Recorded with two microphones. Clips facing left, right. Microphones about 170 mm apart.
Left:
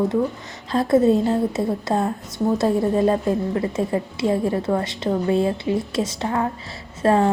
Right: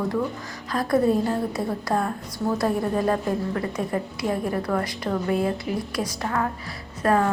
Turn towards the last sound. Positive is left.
turn(degrees=25)  # may be behind; listen again after turning